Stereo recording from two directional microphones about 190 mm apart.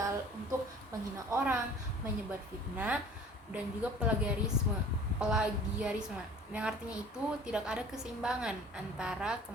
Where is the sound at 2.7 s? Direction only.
5° right (ahead or behind).